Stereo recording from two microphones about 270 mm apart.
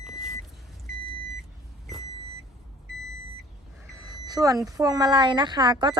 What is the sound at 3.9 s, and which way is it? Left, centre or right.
Speech, centre.